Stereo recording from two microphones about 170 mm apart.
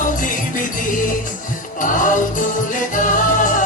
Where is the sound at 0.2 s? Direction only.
50° left (ahead or behind).